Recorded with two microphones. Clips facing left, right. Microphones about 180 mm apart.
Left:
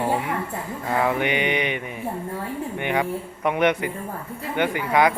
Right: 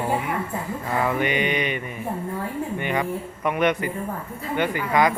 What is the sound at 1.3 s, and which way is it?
Mantra, 65° left (ahead or behind).